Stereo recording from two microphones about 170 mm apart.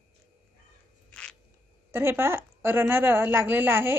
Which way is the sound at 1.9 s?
15° right (ahead or behind).